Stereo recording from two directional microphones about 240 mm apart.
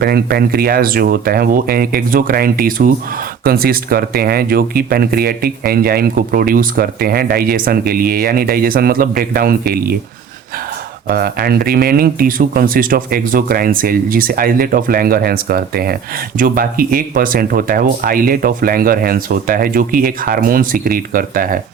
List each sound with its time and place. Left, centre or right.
0.0 s speech: right
11.1 s speech: right